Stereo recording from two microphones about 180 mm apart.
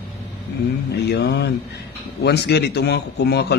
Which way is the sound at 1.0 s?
65° left (ahead or behind).